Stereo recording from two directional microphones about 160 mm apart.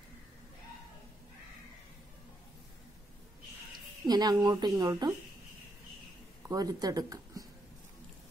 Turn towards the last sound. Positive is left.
turn(degrees=-20)  # may be behind; listen again after turning